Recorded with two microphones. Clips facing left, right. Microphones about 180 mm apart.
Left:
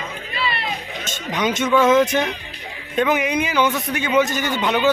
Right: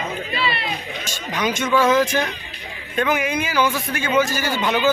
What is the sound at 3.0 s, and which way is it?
A man's voice, 20° left (ahead or behind).